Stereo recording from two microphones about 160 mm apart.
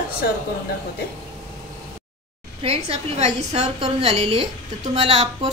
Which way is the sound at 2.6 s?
40° right (ahead or behind).